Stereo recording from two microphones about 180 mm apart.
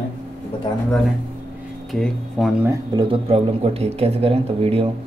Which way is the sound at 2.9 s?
30° right (ahead or behind).